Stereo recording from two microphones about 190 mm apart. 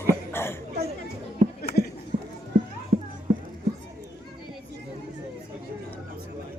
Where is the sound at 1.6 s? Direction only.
55° left (ahead or behind).